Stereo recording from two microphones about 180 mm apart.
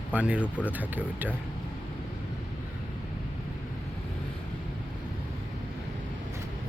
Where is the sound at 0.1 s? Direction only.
5° right (ahead or behind).